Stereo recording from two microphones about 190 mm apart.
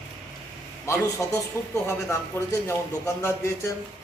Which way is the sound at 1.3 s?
5° left (ahead or behind).